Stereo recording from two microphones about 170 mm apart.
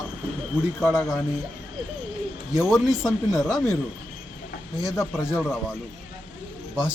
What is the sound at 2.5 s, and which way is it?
Speech, centre (ahead or behind).